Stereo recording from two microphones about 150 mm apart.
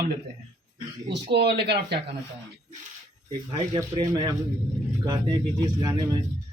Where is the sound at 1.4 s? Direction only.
90° right.